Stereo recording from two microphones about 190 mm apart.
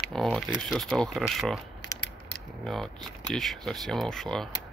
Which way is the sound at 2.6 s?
Centre (ahead or behind).